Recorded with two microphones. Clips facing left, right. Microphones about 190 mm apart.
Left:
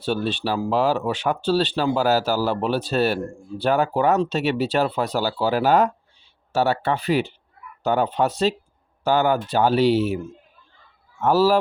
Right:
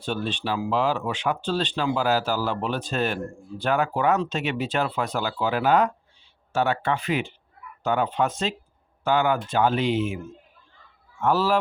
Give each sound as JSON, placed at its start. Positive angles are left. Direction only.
{"t": 0.0, "sound": "speech", "side_deg": 40}
{"t": 11.2, "sound": "speech", "side_deg": 40}